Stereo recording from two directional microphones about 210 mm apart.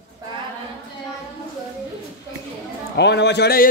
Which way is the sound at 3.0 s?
55° left (ahead or behind).